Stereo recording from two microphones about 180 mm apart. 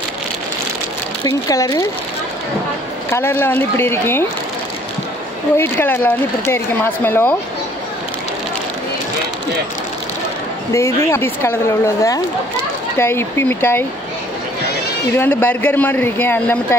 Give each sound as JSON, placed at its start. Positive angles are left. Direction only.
{"t": 1.2, "sound": "speech", "side_deg": 20}
{"t": 3.1, "sound": "speech", "side_deg": 15}
{"t": 5.6, "sound": "speech", "side_deg": 10}
{"t": 10.7, "sound": "speech", "side_deg": 15}
{"t": 15.1, "sound": "speech", "side_deg": 10}